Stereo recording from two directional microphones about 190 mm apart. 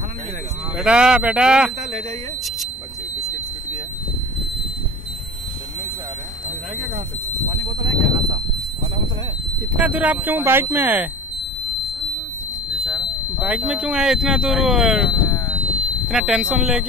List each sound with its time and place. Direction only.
0.7 s speech: 5° right (ahead or behind)
7.6 s speech: 25° right (ahead or behind)
9.8 s speech: 10° right (ahead or behind)
13.4 s speech: 5° right (ahead or behind)
15.6 s a sound: 30° right (ahead or behind)
16.1 s speech: centre (ahead or behind)